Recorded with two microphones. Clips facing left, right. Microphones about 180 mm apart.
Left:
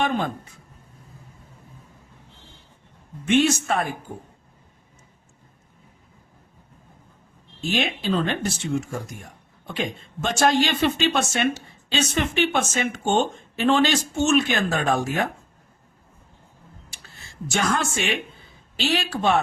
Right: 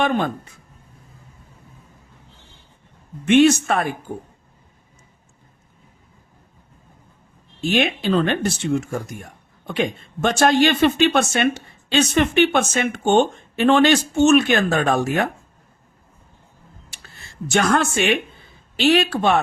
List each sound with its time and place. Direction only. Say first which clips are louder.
3.2 s speech: right 6 dB; 65° right (ahead or behind)
7.7 s speech: right 5 dB; 65° right (ahead or behind)
17.5 s speech: right 6 dB; 65° right (ahead or behind)